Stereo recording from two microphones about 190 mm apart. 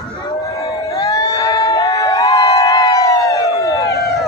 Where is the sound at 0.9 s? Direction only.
15° left (ahead or behind).